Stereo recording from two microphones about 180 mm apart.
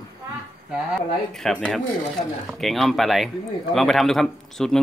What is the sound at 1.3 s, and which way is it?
Speech, 5° left (ahead or behind).